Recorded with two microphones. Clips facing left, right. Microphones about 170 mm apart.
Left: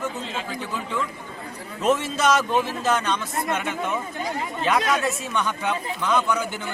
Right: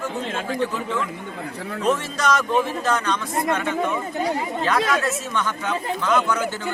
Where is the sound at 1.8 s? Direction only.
25° left (ahead or behind).